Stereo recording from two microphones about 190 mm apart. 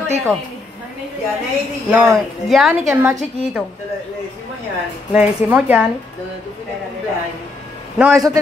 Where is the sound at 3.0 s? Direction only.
10° right (ahead or behind).